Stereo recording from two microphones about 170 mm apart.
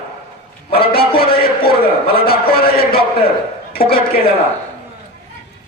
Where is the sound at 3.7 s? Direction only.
60° left (ahead or behind).